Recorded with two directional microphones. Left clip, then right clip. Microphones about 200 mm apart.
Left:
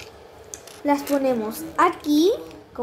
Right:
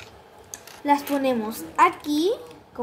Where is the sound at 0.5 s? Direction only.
Centre (ahead or behind).